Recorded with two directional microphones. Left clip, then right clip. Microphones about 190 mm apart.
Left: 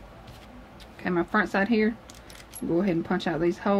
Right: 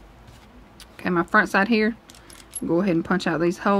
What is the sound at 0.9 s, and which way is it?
Speech, 50° right (ahead or behind).